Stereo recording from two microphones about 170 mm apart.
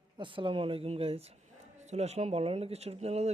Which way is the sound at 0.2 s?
30° right (ahead or behind).